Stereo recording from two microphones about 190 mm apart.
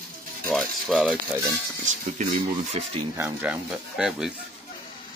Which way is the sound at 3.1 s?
10° right (ahead or behind).